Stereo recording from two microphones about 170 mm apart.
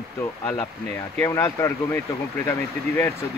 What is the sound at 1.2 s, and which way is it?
Speech, 15° left (ahead or behind).